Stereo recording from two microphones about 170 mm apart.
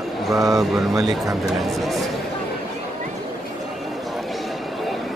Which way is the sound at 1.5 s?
Centre (ahead or behind).